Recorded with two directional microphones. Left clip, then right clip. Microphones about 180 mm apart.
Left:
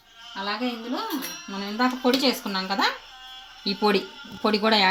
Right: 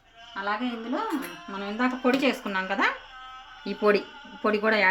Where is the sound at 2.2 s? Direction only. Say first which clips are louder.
Left 1 dB; 30° left (ahead or behind).